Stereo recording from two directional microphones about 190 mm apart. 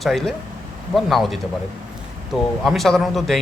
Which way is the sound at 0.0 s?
Centre (ahead or behind).